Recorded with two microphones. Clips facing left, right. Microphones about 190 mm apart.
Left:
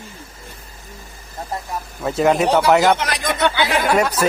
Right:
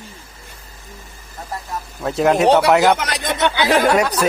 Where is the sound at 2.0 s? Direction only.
Centre (ahead or behind).